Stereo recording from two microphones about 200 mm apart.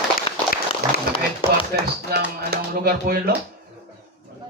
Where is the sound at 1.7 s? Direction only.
50° right (ahead or behind).